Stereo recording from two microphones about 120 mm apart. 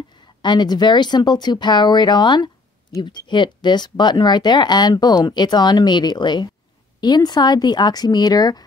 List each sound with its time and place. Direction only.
0.4 s speech: 35° left (ahead or behind)